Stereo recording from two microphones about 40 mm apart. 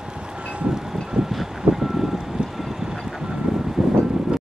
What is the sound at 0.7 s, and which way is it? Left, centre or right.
Wind chime, centre.